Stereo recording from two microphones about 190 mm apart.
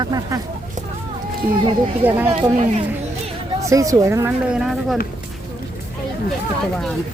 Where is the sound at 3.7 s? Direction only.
15° right (ahead or behind).